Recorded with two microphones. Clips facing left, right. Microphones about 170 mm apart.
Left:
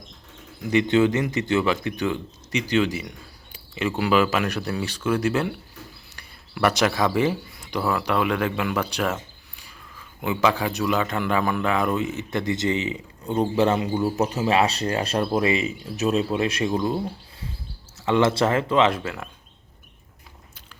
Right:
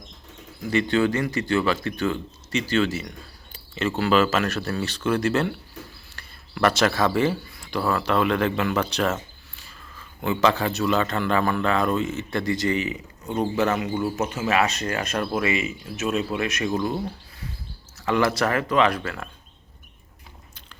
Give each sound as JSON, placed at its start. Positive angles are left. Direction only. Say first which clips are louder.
{"t": 0.7, "sound": "a man's voice", "louder": "left 2 dB", "side_deg": 20}
{"t": 17.9, "sound": "speech", "louder": "left 2 dB", "side_deg": 25}